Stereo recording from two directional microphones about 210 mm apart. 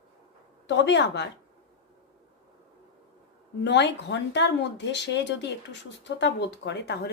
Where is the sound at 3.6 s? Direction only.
55° left (ahead or behind).